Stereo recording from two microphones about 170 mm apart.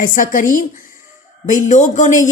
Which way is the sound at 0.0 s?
55° left (ahead or behind).